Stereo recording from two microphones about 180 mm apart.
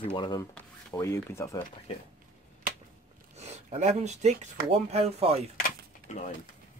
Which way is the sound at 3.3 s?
40° right (ahead or behind).